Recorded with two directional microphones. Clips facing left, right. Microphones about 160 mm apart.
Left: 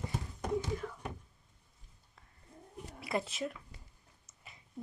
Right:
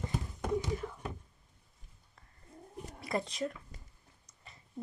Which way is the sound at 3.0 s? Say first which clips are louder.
Right 1 dB; 5° left (ahead or behind).